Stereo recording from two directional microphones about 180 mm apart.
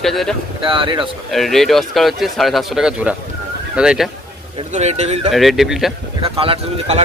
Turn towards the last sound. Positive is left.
turn(degrees=-35)  # may be behind; listen again after turning